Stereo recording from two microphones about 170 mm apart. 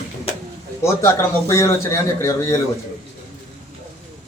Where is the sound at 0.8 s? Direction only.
15° left (ahead or behind).